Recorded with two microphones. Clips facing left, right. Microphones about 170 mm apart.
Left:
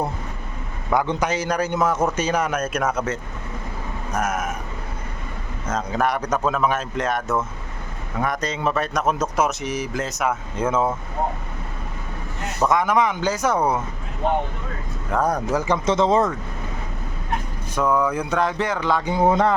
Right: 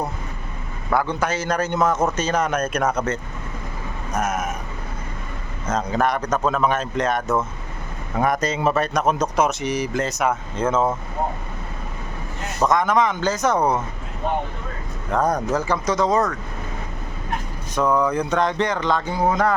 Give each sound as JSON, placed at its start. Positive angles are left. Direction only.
{"t": 0.9, "sound": "a man's voice", "side_deg": 20}
{"t": 4.2, "sound": "speech", "side_deg": 10}
{"t": 5.7, "sound": "a man's voice", "side_deg": 5}
{"t": 12.6, "sound": "a man's voice", "side_deg": 10}
{"t": 15.1, "sound": "a man's voice", "side_deg": 5}
{"t": 15.6, "sound": "speech", "side_deg": 20}
{"t": 17.7, "sound": "speech", "side_deg": 5}
{"t": 19.1, "sound": "speech", "side_deg": 25}